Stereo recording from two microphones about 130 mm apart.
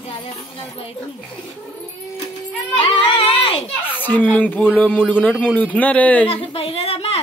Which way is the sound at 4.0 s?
15° left (ahead or behind).